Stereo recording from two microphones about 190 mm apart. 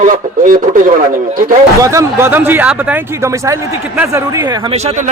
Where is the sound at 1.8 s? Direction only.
15° right (ahead or behind).